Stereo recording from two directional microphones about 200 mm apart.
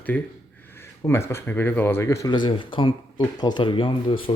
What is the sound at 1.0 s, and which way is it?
Speech, 15° left (ahead or behind).